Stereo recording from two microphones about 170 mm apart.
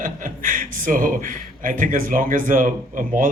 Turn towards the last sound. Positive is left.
turn(degrees=-50)  # may be behind; listen again after turning